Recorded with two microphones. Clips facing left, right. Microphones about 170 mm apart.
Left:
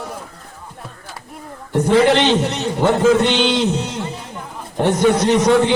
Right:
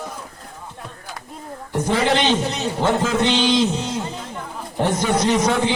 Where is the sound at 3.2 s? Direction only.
65° left (ahead or behind).